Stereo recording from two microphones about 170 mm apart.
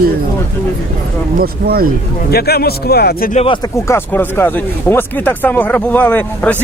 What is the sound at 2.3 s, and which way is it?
A man's voice, 65° left (ahead or behind).